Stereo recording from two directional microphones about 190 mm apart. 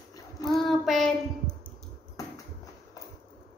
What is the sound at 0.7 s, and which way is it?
Speech, centre (ahead or behind).